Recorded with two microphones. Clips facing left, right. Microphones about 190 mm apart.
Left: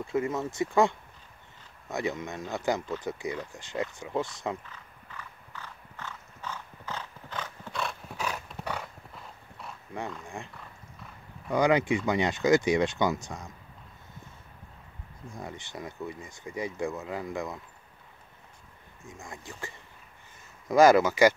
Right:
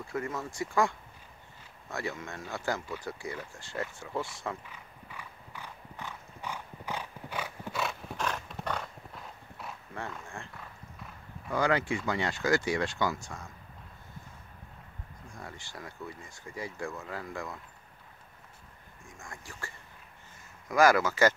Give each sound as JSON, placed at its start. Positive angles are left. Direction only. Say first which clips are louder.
{"t": 0.0, "sound": "speech", "louder": "left 6 dB", "side_deg": 20}
{"t": 4.6, "sound": "clip-clop", "louder": "even", "side_deg": -10}
{"t": 8.2, "sound": "clip-clop", "louder": "even", "side_deg": 5}
{"t": 10.2, "sound": "speech", "louder": "left 4 dB", "side_deg": 15}
{"t": 11.5, "sound": "speech", "louder": "left 5 dB", "side_deg": 20}
{"t": 15.3, "sound": "speech", "louder": "left 5 dB", "side_deg": 20}
{"t": 19.0, "sound": "speech", "louder": "left 4 dB", "side_deg": 20}